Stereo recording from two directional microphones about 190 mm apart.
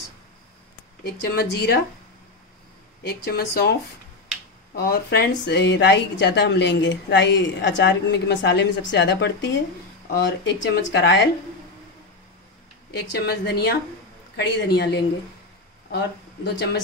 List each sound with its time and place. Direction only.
1.0 s a woman's voice: 55° left (ahead or behind)
3.0 s a woman's voice: 55° left (ahead or behind)
4.7 s a woman's voice: 55° left (ahead or behind)
12.9 s a woman's voice: 60° left (ahead or behind)